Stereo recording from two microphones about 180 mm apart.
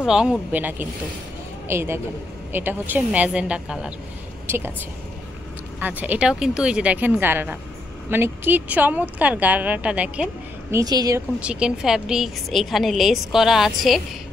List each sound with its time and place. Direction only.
0.0 s speech: 5° right (ahead or behind)
5.8 s speech: 10° right (ahead or behind)
10.7 s a woman's voice: 20° right (ahead or behind)
11.3 s a woman's voice: 5° right (ahead or behind)